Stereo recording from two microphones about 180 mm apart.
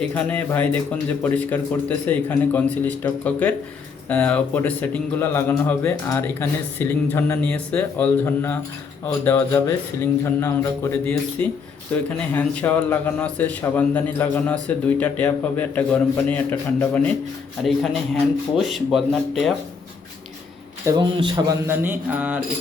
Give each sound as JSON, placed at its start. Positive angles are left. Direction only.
{"t": 0.0, "sound": "a man's voice", "side_deg": 10}
{"t": 17.6, "sound": "speech", "side_deg": 0}
{"t": 20.8, "sound": "a man's voice", "side_deg": -25}
{"t": 21.8, "sound": "speech", "side_deg": -10}